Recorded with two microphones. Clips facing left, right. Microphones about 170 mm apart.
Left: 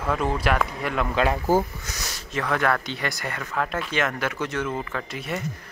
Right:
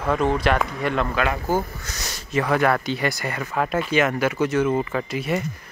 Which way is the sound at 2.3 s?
10° right (ahead or behind).